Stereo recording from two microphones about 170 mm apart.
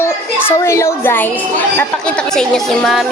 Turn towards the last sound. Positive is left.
turn(degrees=0)  # may be behind; listen again after turning